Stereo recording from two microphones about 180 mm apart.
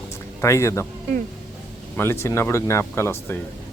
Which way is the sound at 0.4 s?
15° left (ahead or behind).